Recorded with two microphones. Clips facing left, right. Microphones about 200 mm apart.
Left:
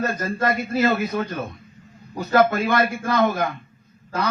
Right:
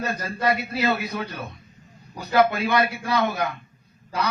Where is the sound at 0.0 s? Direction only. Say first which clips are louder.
Left 2 dB; 50° left (ahead or behind).